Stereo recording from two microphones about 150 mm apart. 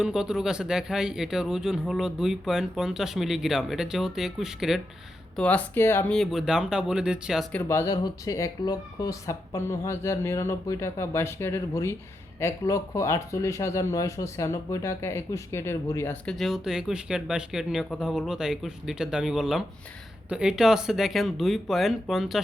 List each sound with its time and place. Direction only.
0.0 s speech: 5° right (ahead or behind)
5.4 s speech: 10° left (ahead or behind)
6.1 s speech: centre (ahead or behind)
7.5 s speech: 15° left (ahead or behind)
16.2 s speech: centre (ahead or behind)